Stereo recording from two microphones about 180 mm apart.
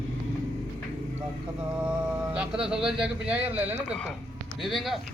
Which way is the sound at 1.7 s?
5° right (ahead or behind).